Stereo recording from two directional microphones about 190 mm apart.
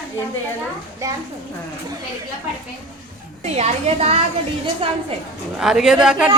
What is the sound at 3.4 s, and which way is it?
A woman's voice, 35° right (ahead or behind).